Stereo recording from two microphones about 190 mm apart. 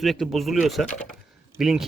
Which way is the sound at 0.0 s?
Centre (ahead or behind).